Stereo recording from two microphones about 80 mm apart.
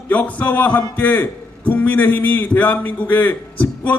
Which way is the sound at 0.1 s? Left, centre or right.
Centre.